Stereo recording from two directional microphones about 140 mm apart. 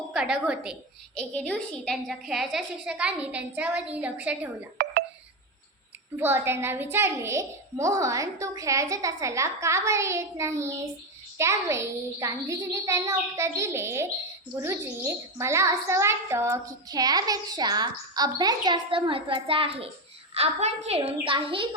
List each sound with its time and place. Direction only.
0.1 s a woman's voice: 5° right (ahead or behind)
1.1 s a woman's voice: 5° left (ahead or behind)
6.1 s a child's voice: 15° right (ahead or behind); by 21.8 s 35° right (ahead or behind)